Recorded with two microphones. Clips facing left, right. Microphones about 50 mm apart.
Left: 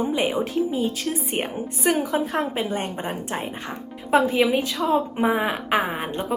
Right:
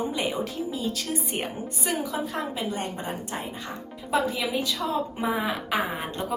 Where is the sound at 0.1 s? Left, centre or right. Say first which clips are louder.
Left 6 dB; left.